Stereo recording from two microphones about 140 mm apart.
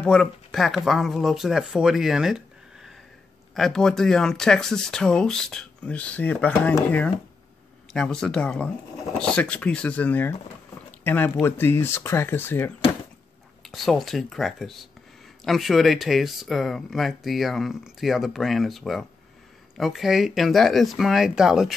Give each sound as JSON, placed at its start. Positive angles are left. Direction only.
{"t": 0.0, "sound": "speech", "side_deg": 5}
{"t": 7.9, "sound": "speech", "side_deg": 5}
{"t": 13.6, "sound": "speech", "side_deg": 0}